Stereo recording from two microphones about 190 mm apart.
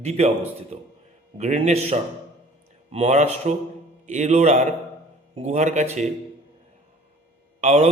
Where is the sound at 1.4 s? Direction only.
35° right (ahead or behind).